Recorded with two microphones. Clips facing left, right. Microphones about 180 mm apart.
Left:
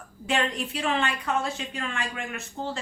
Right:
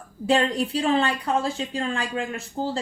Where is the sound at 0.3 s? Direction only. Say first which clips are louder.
Right 6 dB; 35° right (ahead or behind).